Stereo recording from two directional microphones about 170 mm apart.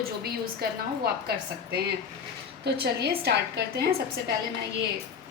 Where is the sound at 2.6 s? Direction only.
75° right (ahead or behind).